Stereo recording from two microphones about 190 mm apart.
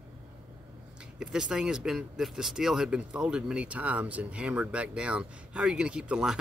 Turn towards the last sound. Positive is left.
turn(degrees=-5)  # may be behind; listen again after turning